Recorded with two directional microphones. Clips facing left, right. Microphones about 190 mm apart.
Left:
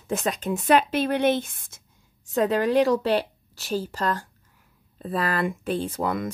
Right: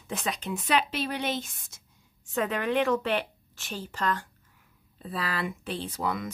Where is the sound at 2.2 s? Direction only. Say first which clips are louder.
Left 7 dB; 35° left (ahead or behind).